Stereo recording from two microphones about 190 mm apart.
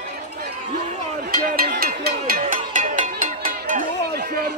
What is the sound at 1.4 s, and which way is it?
Music, 50° right (ahead or behind).